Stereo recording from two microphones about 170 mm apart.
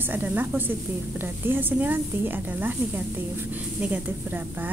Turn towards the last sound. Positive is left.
turn(degrees=-10)  # may be behind; listen again after turning